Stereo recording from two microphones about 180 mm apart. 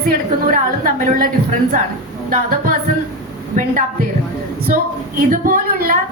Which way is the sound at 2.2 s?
50° right (ahead or behind).